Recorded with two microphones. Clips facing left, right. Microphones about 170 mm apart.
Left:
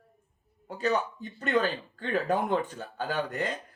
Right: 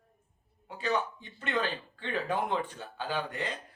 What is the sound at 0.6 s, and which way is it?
Speech, 40° left (ahead or behind).